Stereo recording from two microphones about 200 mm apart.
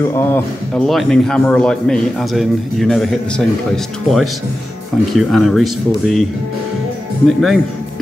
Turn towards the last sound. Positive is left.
turn(degrees=0)  # may be behind; listen again after turning